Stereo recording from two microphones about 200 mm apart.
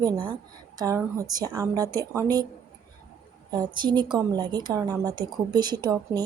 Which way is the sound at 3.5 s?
20° right (ahead or behind).